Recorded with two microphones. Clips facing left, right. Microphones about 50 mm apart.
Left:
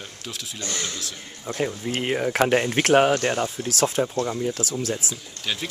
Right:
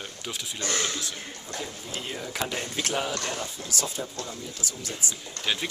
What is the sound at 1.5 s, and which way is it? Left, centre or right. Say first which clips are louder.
Speech: left 10 dB; left.